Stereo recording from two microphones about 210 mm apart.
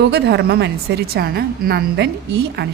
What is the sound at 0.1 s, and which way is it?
A woman's voice, 50° right (ahead or behind).